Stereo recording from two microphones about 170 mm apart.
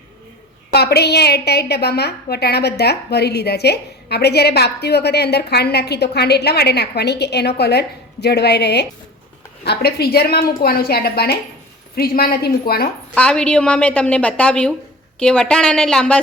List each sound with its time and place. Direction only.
0.7 s a woman's voice: 70° left (ahead or behind)
13.1 s a woman's voice: 5° left (ahead or behind)